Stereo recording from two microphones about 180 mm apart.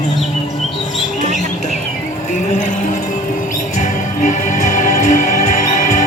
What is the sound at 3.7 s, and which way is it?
Music, 45° left (ahead or behind).